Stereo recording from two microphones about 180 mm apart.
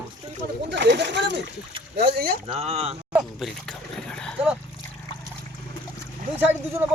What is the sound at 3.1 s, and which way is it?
Dog, centre (ahead or behind).